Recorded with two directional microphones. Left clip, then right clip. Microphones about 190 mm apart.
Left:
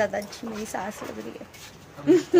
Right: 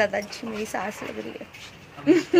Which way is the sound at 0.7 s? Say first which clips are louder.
Right 1 dB; 35° right (ahead or behind).